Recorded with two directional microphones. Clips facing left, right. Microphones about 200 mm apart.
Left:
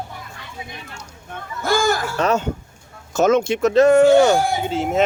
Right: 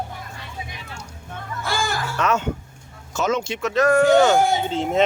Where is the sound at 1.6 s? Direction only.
45° left (ahead or behind).